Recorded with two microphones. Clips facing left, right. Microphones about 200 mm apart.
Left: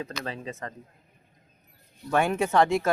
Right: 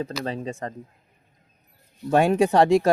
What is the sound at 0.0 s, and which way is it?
Speech, 35° right (ahead or behind).